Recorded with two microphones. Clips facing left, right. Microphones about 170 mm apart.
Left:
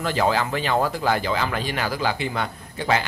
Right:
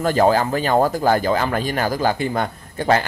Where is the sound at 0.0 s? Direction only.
45° right (ahead or behind).